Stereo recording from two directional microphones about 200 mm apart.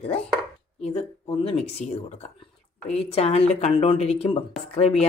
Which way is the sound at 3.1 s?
30° left (ahead or behind).